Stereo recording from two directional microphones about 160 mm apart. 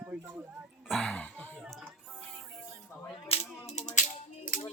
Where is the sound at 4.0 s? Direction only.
50° left (ahead or behind).